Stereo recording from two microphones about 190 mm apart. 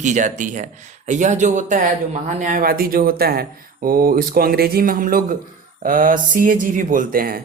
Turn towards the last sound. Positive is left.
turn(degrees=-50)  # may be behind; listen again after turning